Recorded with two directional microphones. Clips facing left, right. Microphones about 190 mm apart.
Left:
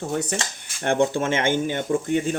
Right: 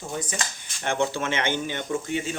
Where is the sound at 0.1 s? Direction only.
65° left (ahead or behind).